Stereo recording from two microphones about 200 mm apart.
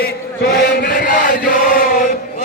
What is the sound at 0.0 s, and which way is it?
Chant, 50° left (ahead or behind).